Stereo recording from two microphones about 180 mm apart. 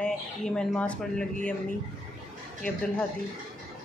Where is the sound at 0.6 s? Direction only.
5° left (ahead or behind).